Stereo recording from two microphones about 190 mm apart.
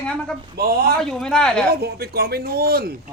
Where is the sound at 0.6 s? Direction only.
55° right (ahead or behind).